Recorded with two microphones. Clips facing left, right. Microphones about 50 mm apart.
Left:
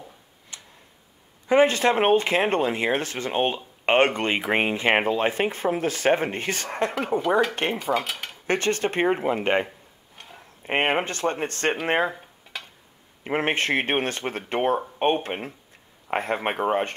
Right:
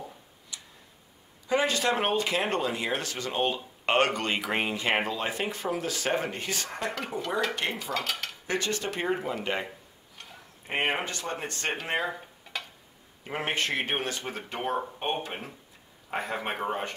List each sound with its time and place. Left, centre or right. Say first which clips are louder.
0.5 s tick-tock: left 1 dB; left
1.5 s speech: left 7 dB; left
7.0 s speech: left 9 dB; left
7.9 s dishes: left 6 dB; centre
8.5 s speech: left 7 dB; left
10.7 s speech: left 6 dB; left
13.2 s speech: left 6 dB; left